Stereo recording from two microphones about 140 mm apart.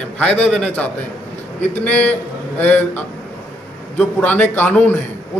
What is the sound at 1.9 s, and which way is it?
Speech, 10° left (ahead or behind).